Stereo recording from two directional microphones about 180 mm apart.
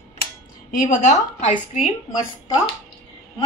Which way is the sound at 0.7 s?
45° left (ahead or behind).